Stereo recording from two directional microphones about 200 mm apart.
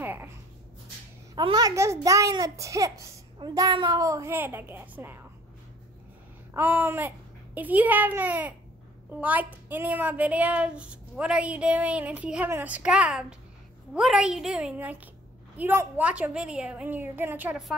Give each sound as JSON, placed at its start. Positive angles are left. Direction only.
{"t": 0.0, "sound": "a sound", "side_deg": -10}
{"t": 1.3, "sound": "speech", "side_deg": -20}
{"t": 6.5, "sound": "a child's voice", "side_deg": -10}